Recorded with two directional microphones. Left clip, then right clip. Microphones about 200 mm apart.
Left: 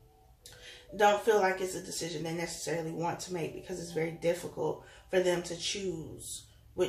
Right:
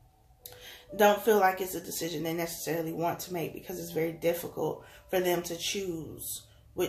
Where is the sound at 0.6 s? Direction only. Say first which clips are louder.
Right 2 dB; 50° right (ahead or behind).